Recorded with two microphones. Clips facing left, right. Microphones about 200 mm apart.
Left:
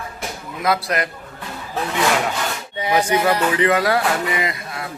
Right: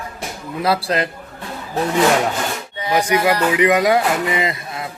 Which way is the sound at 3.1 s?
10° right (ahead or behind).